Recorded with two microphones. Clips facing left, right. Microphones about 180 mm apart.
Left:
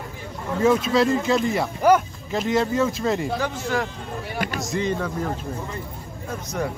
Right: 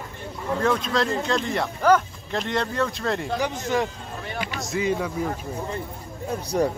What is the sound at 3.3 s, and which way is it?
Speech, 15° right (ahead or behind).